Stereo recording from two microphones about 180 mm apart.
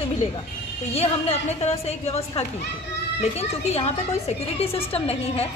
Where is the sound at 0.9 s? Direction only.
35° left (ahead or behind).